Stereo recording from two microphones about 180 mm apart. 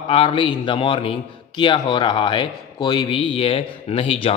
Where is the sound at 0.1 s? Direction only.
30° left (ahead or behind).